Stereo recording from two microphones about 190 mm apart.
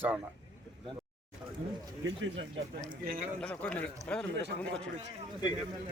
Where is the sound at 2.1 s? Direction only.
70° right (ahead or behind).